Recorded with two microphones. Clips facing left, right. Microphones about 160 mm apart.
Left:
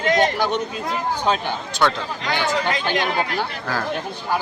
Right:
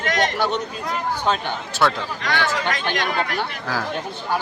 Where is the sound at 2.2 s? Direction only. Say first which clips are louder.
Left 1 dB; 20° left (ahead or behind).